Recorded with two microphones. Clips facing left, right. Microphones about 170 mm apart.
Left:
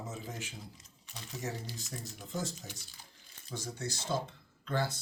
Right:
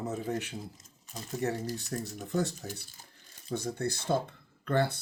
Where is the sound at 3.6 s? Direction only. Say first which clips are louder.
Right 6 dB; 55° right (ahead or behind).